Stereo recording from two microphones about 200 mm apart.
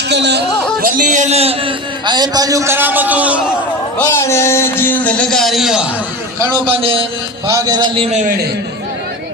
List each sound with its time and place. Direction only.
0.1 s a man's voice: 60° right (ahead or behind); by 3.4 s 5° right (ahead or behind)
3.9 s speech: 15° left (ahead or behind)
6.4 s a man's voice: 25° right (ahead or behind)
7.4 s a man's voice: 15° right (ahead or behind)